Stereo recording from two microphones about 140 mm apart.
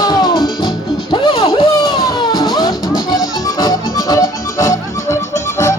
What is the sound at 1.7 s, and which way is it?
Music, 25° left (ahead or behind).